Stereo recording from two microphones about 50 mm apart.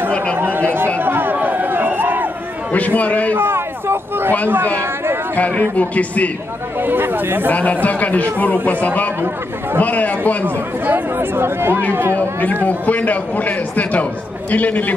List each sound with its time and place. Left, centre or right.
0.1 s chatter: left
0.4 s speech: right
1.0 s chatter: right
2.7 s a man's voice: left
3.3 s speech: right
5.3 s a man's voice: left
6.8 s speech: right
7.5 s a man's voice: left
10.4 s speech: right
12.2 s a man's voice: left